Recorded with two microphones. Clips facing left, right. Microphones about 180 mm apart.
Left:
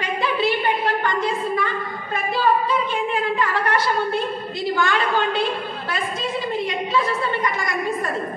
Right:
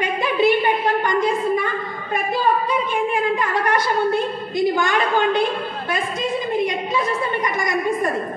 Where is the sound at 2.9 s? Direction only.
15° right (ahead or behind).